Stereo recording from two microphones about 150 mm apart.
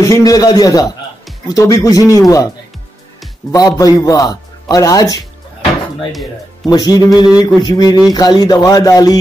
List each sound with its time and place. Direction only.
0.0 s a man's voice: 25° left (ahead or behind)
3.5 s a man's voice: 25° left (ahead or behind)
6.6 s a man's voice: 25° left (ahead or behind)